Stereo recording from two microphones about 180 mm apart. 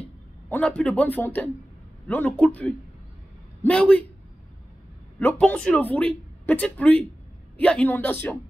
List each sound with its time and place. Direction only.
0.5 s speech: 5° left (ahead or behind)
5.2 s speech: 5° left (ahead or behind)